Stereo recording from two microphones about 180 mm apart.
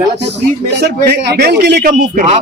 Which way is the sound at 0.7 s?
65° right (ahead or behind).